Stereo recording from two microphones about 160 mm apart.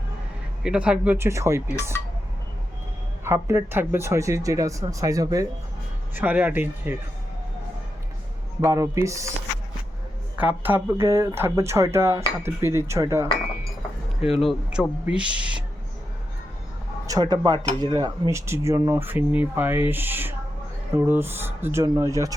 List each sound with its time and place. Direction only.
0.6 s speech: 5° right (ahead or behind)
3.2 s speech: 15° right (ahead or behind)
6.1 s speech: 10° right (ahead or behind)
8.6 s speech: 20° right (ahead or behind)
10.3 s speech: 10° right (ahead or behind)
14.2 s speech: centre (ahead or behind)
17.1 s speech: 25° right (ahead or behind)